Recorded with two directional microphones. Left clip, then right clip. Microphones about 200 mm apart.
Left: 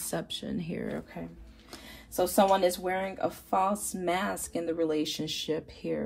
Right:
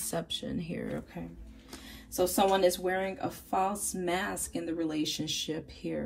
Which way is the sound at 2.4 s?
40° left (ahead or behind).